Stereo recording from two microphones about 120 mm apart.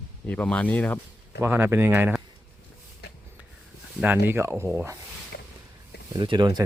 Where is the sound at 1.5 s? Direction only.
20° right (ahead or behind).